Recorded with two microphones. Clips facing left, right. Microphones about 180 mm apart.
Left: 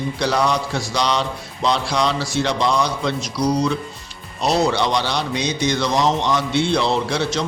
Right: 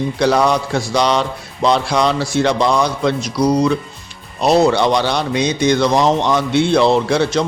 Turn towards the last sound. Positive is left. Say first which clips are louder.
# right 6 dB
turn(degrees=-55)  # may be behind; listen again after turning